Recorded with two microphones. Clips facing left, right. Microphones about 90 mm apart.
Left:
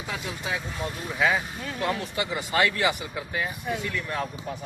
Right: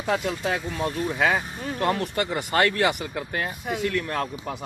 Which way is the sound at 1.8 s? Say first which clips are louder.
Right 4 dB; 55° right (ahead or behind).